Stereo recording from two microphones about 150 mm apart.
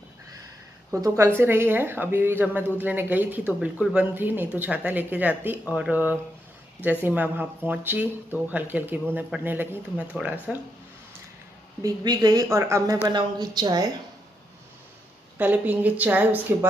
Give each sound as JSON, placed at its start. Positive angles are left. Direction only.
{"t": 1.0, "sound": "speech", "side_deg": -20}
{"t": 11.8, "sound": "speech", "side_deg": -25}
{"t": 15.3, "sound": "speech", "side_deg": -10}